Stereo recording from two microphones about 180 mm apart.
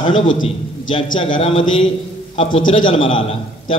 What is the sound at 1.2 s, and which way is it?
Speech, 30° left (ahead or behind).